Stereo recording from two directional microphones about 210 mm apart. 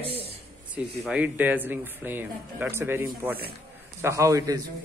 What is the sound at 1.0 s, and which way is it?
Speech, 5° right (ahead or behind).